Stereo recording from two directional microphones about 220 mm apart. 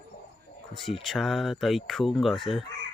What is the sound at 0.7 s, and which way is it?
Speech, centre (ahead or behind).